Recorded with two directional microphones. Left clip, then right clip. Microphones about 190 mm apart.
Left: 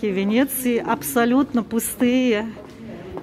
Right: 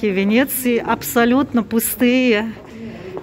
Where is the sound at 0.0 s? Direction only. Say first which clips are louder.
Right 4 dB; 5° right (ahead or behind).